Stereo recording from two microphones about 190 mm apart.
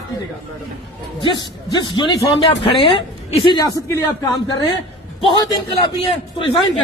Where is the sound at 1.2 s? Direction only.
25° left (ahead or behind).